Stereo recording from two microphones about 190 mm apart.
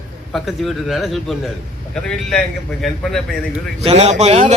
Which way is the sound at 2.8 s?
Centre (ahead or behind).